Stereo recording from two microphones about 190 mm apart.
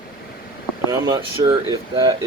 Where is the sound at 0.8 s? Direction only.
20° right (ahead or behind).